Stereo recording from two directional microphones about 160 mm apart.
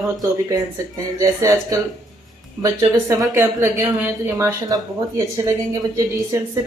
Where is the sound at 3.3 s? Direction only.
15° right (ahead or behind).